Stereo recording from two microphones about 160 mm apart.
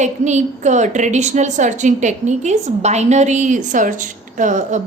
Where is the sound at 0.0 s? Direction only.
45° right (ahead or behind).